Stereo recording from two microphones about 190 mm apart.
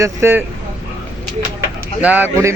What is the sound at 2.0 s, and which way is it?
Speech, 10° right (ahead or behind).